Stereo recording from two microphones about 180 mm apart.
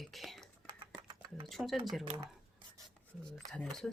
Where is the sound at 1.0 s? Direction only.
25° right (ahead or behind).